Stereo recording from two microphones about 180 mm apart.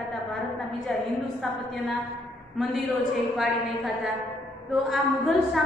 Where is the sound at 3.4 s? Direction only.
Centre (ahead or behind).